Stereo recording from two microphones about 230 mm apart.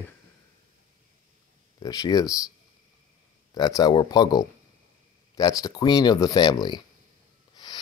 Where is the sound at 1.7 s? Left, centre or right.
Centre.